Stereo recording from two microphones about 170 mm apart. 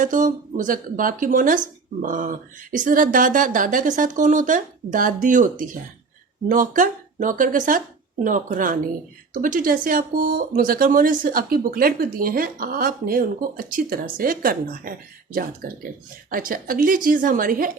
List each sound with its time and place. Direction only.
0.0 s speech: 50° right (ahead or behind)
16.3 s speech: 55° right (ahead or behind)